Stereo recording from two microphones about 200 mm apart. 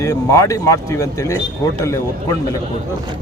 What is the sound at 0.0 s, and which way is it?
A man's voice, 15° left (ahead or behind).